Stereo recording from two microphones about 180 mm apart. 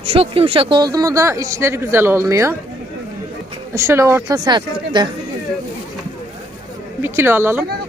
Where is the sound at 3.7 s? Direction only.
15° right (ahead or behind).